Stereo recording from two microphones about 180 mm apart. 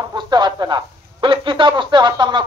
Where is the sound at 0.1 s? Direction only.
25° right (ahead or behind).